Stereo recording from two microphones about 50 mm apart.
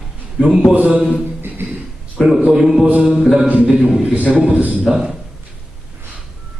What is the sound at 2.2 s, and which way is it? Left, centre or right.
Speech, centre.